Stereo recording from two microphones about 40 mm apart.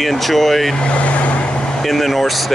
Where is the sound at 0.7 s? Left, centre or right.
Left.